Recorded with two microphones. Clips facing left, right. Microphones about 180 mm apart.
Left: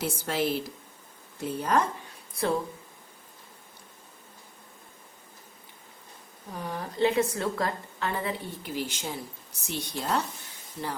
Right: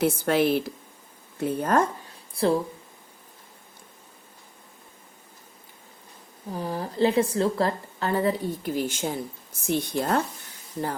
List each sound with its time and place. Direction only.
0.0 s a woman's voice: 60° right (ahead or behind)
2.3 s speech: 30° right (ahead or behind)
6.5 s a woman's voice: 30° right (ahead or behind)